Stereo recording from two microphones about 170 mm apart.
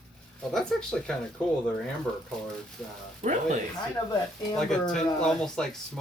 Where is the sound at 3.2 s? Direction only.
40° right (ahead or behind).